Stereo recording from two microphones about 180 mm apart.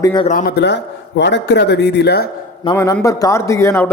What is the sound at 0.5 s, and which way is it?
A man's voice, 75° left (ahead or behind).